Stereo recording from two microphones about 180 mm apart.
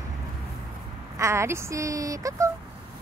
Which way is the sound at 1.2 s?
15° right (ahead or behind).